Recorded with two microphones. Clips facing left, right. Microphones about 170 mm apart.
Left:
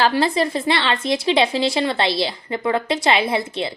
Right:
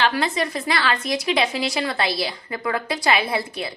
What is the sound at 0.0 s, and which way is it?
A woman's voice, 30° left (ahead or behind).